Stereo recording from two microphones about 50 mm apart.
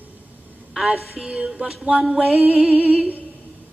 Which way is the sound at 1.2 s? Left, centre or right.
Centre.